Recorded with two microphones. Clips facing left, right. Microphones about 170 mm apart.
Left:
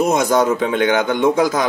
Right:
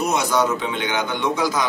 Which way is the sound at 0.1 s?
50° left (ahead or behind).